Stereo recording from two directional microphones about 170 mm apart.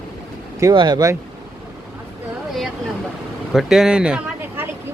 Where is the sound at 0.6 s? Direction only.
25° right (ahead or behind).